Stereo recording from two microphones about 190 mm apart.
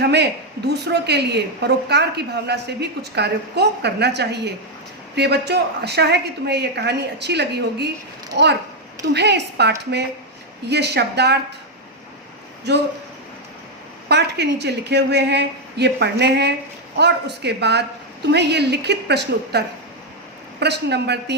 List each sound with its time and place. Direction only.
0.0 s a woman's voice: 60° right (ahead or behind)
14.1 s a woman's voice: 60° right (ahead or behind)